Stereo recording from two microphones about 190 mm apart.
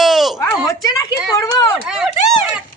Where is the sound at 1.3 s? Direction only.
20° left (ahead or behind).